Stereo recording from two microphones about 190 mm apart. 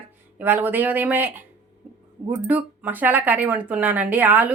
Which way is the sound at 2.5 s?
10° right (ahead or behind).